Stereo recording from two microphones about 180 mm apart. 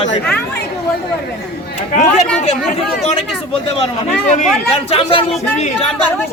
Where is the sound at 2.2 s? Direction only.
5° left (ahead or behind).